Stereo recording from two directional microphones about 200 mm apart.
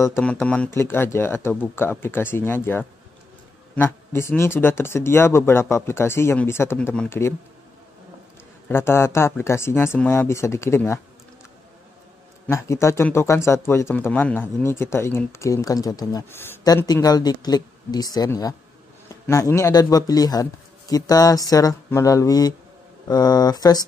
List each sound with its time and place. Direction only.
0.0 s speech: 10° left (ahead or behind)
8.6 s speech: 10° left (ahead or behind)
12.4 s speech: 15° left (ahead or behind)